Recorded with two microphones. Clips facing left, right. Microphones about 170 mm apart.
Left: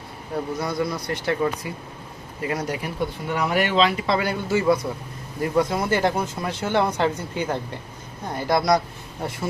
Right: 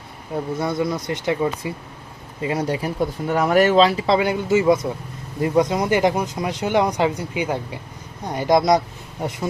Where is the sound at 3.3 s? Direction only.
45° right (ahead or behind).